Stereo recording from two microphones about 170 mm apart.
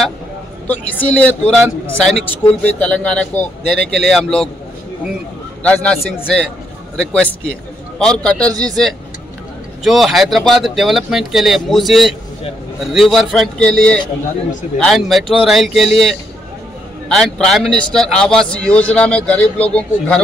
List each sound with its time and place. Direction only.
0.7 s speech: 10° left (ahead or behind)
5.6 s speech: 5° left (ahead or behind)